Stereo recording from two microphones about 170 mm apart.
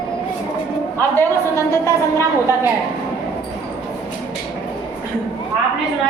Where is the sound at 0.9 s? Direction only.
15° left (ahead or behind).